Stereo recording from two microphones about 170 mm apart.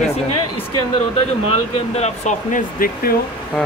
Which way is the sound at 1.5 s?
40° left (ahead or behind).